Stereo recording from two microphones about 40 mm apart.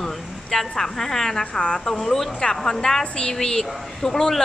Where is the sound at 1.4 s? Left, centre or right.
Left.